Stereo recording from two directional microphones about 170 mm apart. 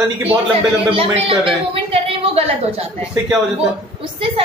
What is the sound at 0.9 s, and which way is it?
Speech, 35° right (ahead or behind).